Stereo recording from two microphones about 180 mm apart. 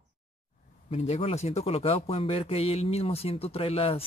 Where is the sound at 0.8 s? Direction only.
35° left (ahead or behind).